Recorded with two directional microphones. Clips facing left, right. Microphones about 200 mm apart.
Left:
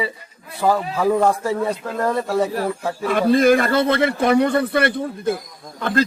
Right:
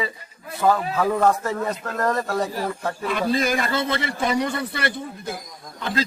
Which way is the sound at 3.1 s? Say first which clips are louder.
Left 8 dB; 55° left (ahead or behind).